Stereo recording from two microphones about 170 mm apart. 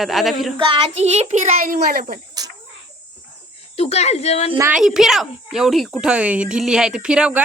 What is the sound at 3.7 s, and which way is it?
Speech, 40° left (ahead or behind).